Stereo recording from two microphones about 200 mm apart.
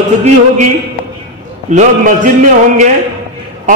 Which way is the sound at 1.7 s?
40° right (ahead or behind).